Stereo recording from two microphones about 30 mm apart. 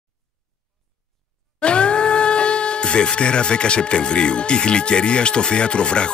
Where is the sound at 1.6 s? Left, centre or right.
Left.